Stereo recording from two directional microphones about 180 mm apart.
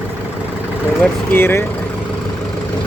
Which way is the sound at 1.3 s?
10° left (ahead or behind).